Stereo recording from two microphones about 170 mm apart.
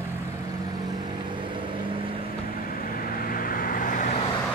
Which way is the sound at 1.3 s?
30° right (ahead or behind).